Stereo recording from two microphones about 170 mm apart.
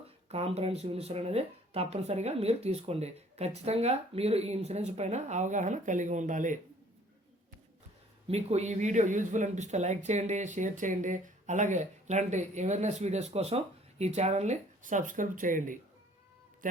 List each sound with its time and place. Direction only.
0.3 s speech: 35° right (ahead or behind)
8.3 s speech: 40° right (ahead or behind)